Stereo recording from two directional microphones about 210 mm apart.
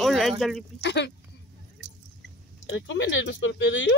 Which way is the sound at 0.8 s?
55° left (ahead or behind).